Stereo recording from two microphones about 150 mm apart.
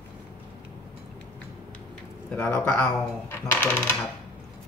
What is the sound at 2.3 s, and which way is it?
Speech, 15° left (ahead or behind).